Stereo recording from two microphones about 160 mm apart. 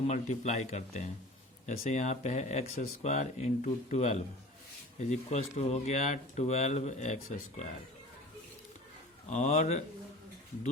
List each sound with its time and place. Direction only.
0.1 s speech: 45° left (ahead or behind)
9.3 s speech: 50° left (ahead or behind)